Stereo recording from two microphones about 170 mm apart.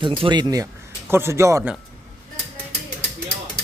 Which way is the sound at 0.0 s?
30° right (ahead or behind).